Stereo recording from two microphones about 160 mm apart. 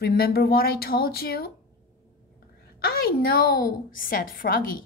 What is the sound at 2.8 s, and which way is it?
A woman's voice, 70° left (ahead or behind).